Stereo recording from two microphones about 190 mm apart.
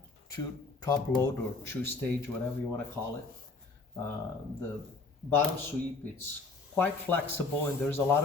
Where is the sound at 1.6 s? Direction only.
10° left (ahead or behind).